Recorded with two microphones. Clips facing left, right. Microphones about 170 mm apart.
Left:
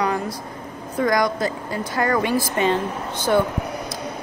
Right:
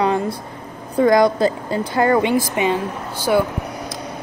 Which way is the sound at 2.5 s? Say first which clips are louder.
Right 1 dB; 10° right (ahead or behind).